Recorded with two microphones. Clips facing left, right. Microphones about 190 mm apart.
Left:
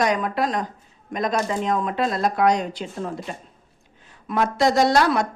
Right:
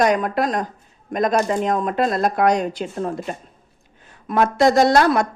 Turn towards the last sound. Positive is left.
turn(degrees=-50)  # may be behind; listen again after turning